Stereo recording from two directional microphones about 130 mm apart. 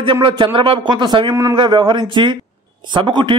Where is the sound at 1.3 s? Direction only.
20° right (ahead or behind).